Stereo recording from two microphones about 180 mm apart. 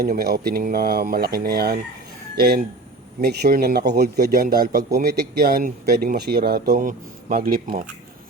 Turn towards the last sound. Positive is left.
turn(degrees=-50)  # may be behind; listen again after turning